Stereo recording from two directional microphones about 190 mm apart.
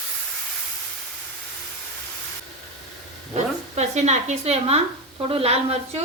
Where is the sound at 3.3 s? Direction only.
35° right (ahead or behind).